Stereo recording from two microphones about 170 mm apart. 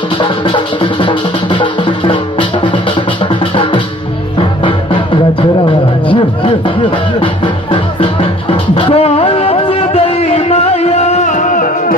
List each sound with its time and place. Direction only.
0.2 s music: 30° left (ahead or behind)
4.4 s music: 30° left (ahead or behind); by 11.7 s 50° left (ahead or behind)